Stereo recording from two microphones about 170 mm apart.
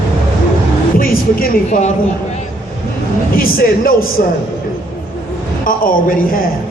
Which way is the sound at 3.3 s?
60° left (ahead or behind).